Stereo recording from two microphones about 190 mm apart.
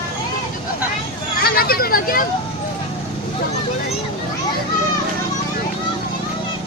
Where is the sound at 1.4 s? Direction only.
55° left (ahead or behind).